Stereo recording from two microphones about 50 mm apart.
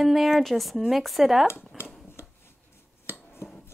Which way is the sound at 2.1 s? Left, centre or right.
Left.